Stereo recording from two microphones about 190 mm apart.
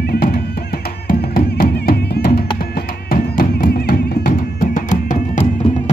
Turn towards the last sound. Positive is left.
turn(degrees=40)  # may be behind; listen again after turning